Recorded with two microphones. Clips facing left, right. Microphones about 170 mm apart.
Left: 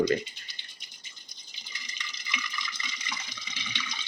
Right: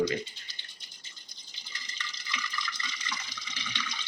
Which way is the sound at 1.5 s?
15° left (ahead or behind).